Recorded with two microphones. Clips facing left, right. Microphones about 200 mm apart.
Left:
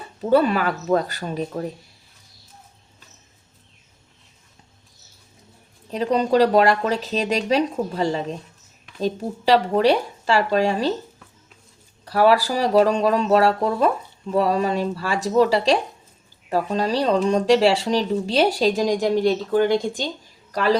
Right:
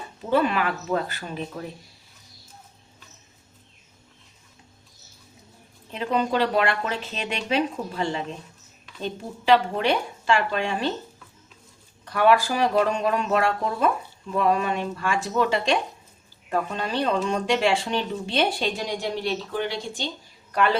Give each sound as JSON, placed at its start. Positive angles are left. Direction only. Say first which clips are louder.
{"t": 0.2, "sound": "speech", "louder": "left 5 dB", "side_deg": 40}
{"t": 5.9, "sound": "speech", "louder": "left 5 dB", "side_deg": 40}
{"t": 12.0, "sound": "speech", "louder": "left 3 dB", "side_deg": 35}
{"t": 20.5, "sound": "a woman's voice", "louder": "left 2 dB", "side_deg": 35}